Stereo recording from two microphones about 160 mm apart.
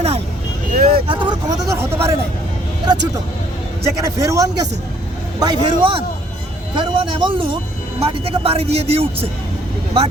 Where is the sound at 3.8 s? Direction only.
20° right (ahead or behind).